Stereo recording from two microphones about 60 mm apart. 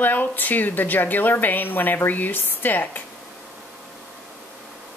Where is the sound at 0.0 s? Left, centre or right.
Left.